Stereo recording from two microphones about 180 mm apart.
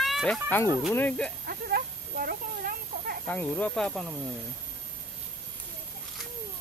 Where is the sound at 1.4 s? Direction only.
55° right (ahead or behind).